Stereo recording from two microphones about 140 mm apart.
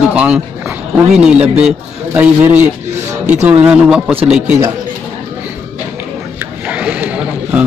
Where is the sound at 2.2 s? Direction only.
10° right (ahead or behind).